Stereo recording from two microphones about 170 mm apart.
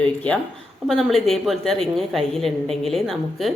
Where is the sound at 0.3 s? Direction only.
10° left (ahead or behind).